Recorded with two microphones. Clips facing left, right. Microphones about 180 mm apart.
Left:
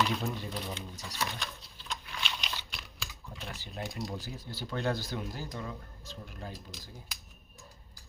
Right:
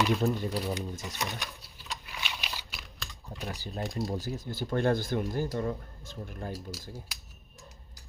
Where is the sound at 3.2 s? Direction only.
40° right (ahead or behind).